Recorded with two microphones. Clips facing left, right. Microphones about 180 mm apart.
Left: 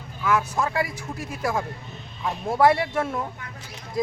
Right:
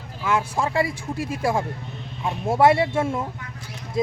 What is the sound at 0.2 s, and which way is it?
Speech, 30° right (ahead or behind).